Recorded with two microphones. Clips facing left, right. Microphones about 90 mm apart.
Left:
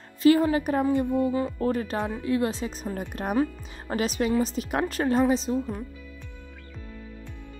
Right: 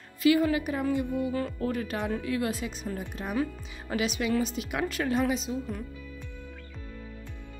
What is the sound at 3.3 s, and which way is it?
Speech, 35° left (ahead or behind).